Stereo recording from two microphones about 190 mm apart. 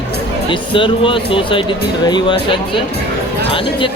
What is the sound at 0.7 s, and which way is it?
Speech, 25° left (ahead or behind).